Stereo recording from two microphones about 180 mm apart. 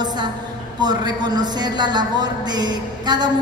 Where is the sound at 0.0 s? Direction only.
25° right (ahead or behind).